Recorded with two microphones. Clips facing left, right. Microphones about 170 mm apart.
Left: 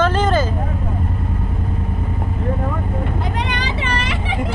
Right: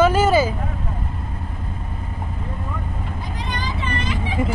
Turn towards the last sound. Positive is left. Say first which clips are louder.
# left 2 dB
turn(degrees=80)